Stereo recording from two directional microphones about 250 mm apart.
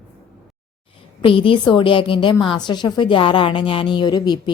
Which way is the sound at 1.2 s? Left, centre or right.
Left.